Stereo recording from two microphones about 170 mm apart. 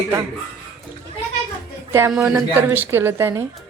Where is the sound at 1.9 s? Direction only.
15° right (ahead or behind).